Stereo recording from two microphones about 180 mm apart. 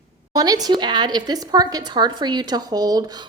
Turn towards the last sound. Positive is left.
turn(degrees=-20)  # may be behind; listen again after turning